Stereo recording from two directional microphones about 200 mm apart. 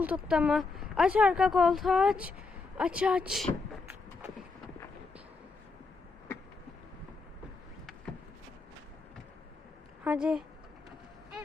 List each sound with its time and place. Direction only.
0.0 s speech: 5° right (ahead or behind)
2.7 s a sound: 5° right (ahead or behind)
10.0 s a woman's voice: 5° right (ahead or behind)